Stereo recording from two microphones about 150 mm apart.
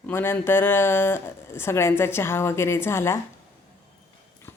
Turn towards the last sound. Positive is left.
turn(degrees=15)  # may be behind; listen again after turning